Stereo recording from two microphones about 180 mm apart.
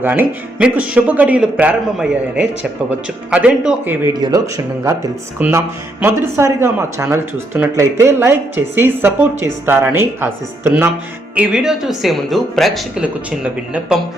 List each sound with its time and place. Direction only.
0.0 s speech: 10° right (ahead or behind)
4.2 s speech: 20° right (ahead or behind)